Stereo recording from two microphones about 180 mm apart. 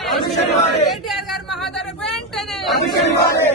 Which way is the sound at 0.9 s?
Centre (ahead or behind).